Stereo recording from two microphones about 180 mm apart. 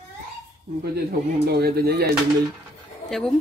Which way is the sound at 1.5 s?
60° right (ahead or behind).